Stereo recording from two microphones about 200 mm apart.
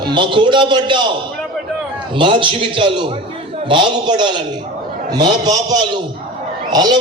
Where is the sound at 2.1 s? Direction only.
25° right (ahead or behind).